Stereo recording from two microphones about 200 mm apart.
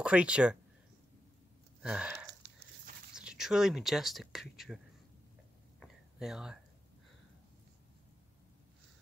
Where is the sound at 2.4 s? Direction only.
60° right (ahead or behind).